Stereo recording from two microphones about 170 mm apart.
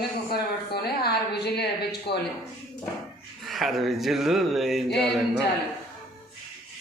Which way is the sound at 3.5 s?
Centre (ahead or behind).